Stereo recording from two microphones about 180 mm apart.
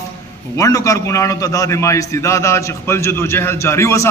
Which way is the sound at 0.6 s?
20° left (ahead or behind).